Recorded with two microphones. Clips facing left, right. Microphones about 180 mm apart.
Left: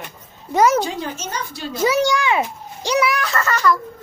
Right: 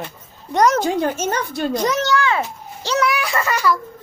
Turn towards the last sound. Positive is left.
turn(degrees=-10)  # may be behind; listen again after turning